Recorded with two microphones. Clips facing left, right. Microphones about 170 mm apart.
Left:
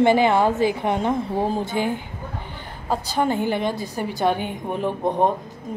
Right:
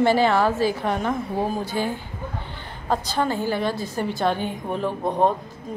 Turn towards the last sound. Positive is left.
turn(degrees=15)  # may be behind; listen again after turning